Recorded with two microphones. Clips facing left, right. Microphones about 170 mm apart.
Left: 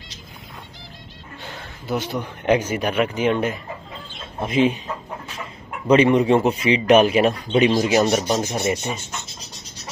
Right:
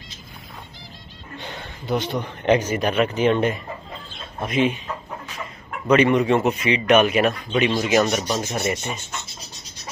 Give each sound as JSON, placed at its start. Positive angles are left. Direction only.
{"t": 1.4, "sound": "speech", "side_deg": 5}
{"t": 4.4, "sound": "speech", "side_deg": 30}
{"t": 5.9, "sound": "a man's voice", "side_deg": 30}